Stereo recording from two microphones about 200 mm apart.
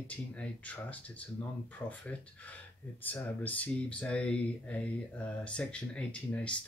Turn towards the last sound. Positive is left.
turn(degrees=5)  # may be behind; listen again after turning